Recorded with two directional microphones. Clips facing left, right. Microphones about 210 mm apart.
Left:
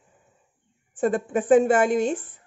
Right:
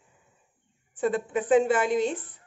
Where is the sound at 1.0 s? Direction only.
45° left (ahead or behind).